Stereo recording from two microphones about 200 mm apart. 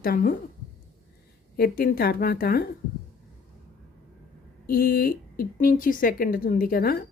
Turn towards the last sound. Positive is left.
turn(degrees=45)  # may be behind; listen again after turning